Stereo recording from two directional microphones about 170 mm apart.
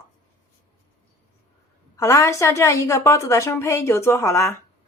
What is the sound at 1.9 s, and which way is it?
A woman's voice, 15° left (ahead or behind).